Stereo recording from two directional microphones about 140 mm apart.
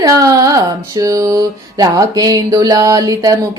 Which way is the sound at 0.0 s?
25° right (ahead or behind).